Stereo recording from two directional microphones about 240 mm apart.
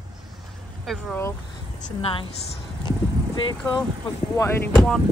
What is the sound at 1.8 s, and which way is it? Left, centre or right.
Speech, left.